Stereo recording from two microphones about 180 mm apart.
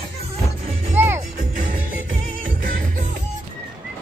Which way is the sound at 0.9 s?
15° right (ahead or behind).